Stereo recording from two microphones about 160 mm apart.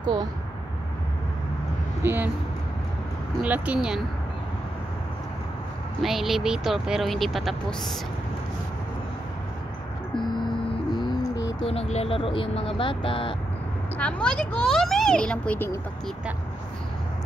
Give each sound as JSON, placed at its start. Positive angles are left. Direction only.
{"t": 0.0, "sound": "speech", "side_deg": -25}
{"t": 2.0, "sound": "speech", "side_deg": -10}
{"t": 3.4, "sound": "speech", "side_deg": -10}
{"t": 5.9, "sound": "speech", "side_deg": 0}
{"t": 10.1, "sound": "music", "side_deg": 30}
{"t": 11.6, "sound": "speech", "side_deg": 40}
{"t": 13.9, "sound": "speech", "side_deg": 10}